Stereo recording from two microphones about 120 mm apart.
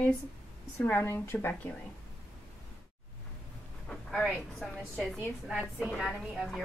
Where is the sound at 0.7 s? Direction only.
20° left (ahead or behind).